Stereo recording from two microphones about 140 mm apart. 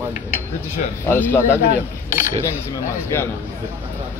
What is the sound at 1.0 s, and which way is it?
Speech, 15° left (ahead or behind).